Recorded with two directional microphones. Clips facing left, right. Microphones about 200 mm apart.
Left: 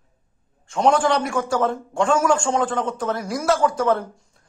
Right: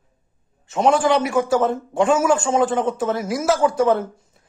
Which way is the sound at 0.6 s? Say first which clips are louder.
Right 1 dB; 5° right (ahead or behind).